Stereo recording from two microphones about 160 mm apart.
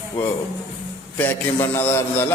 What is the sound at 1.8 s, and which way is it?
Speech, 15° left (ahead or behind).